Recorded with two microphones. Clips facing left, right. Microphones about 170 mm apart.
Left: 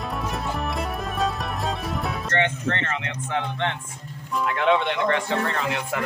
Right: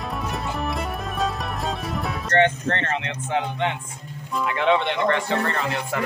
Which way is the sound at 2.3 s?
40° right (ahead or behind).